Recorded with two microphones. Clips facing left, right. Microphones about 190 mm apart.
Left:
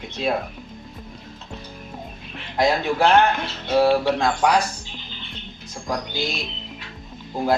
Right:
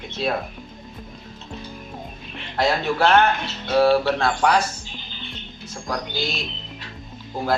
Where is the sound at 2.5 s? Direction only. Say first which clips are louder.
Left 1 dB; 10° left (ahead or behind).